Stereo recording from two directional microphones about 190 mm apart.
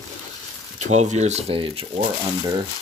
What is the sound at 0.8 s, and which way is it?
Speech, 40° right (ahead or behind).